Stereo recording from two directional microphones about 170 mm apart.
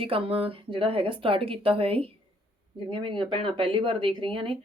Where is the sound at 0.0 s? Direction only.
35° right (ahead or behind).